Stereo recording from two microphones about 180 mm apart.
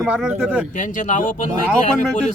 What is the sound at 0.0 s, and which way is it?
Speech, centre (ahead or behind).